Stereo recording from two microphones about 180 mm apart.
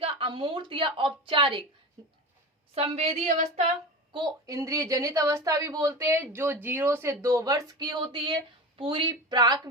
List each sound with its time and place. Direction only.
0.0 s a woman's voice: 30° right (ahead or behind)
2.7 s a woman's voice: 35° right (ahead or behind)
4.1 s a woman's voice: 20° right (ahead or behind)